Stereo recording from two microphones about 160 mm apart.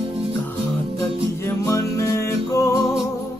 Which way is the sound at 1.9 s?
20° left (ahead or behind).